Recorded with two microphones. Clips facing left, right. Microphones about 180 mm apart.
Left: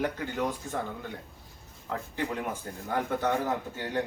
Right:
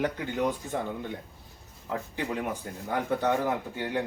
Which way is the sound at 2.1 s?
15° right (ahead or behind).